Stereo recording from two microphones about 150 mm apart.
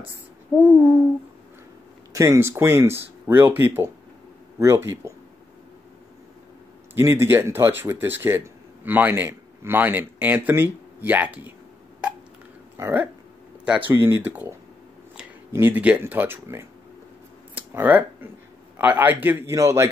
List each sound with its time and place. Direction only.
0.6 s a man's voice: 10° right (ahead or behind)
2.1 s a man's voice: 20° right (ahead or behind)
7.0 s a man's voice: 15° right (ahead or behind)
12.7 s a man's voice: 15° right (ahead or behind)
15.5 s a man's voice: 15° right (ahead or behind)